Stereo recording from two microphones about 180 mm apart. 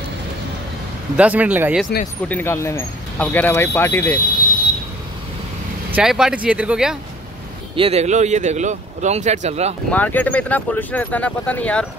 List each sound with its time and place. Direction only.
1.1 s speech: 10° right (ahead or behind)
2.2 s speech: 10° left (ahead or behind)
5.9 s speech: 5° right (ahead or behind)
7.7 s speech: 35° right (ahead or behind)
9.8 s speech: 10° left (ahead or behind)